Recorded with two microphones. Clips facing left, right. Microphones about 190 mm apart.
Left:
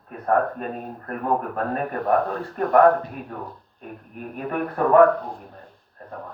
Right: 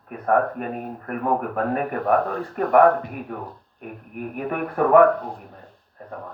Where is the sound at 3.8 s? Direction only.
15° right (ahead or behind).